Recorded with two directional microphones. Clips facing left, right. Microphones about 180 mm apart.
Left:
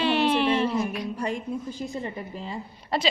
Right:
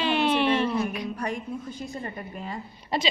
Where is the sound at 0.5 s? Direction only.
30° left (ahead or behind).